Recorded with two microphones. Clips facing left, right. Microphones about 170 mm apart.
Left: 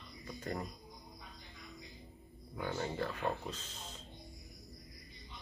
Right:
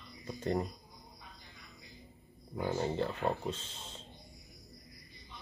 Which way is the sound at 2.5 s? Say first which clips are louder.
Right 5 dB; 25° right (ahead or behind).